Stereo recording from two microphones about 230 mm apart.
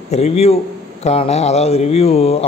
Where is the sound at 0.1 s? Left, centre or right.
Left.